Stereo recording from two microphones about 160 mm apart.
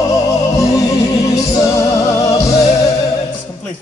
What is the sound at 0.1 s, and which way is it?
Music, 20° left (ahead or behind).